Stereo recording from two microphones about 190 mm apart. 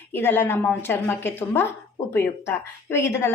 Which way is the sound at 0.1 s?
10° left (ahead or behind).